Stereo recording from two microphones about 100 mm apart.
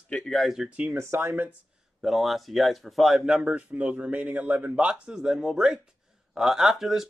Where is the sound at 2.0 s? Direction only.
Centre (ahead or behind).